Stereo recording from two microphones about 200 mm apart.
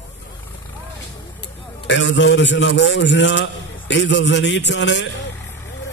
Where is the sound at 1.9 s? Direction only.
65° left (ahead or behind).